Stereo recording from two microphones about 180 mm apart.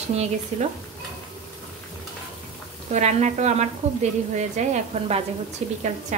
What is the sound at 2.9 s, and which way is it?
A woman's voice, 40° right (ahead or behind).